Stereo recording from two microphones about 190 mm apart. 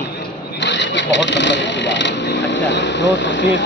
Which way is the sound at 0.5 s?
70° left (ahead or behind).